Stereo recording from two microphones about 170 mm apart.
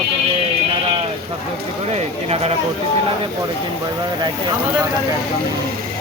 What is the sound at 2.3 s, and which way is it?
Speech, 35° right (ahead or behind).